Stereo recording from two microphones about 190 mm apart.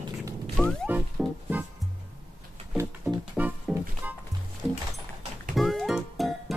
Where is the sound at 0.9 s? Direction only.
10° right (ahead or behind).